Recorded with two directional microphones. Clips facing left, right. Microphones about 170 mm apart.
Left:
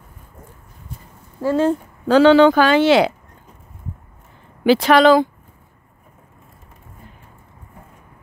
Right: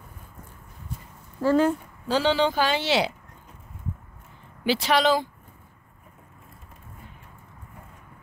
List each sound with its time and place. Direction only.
1.4 s speech: 20° left (ahead or behind)
2.0 s speech: 60° left (ahead or behind)
4.6 s speech: 50° left (ahead or behind)